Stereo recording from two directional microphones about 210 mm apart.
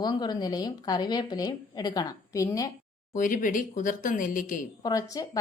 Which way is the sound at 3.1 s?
40° left (ahead or behind).